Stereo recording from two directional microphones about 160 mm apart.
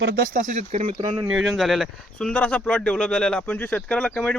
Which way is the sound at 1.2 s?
5° right (ahead or behind).